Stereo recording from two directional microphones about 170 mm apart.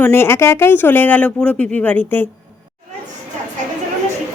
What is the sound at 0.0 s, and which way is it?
Speech, 15° left (ahead or behind).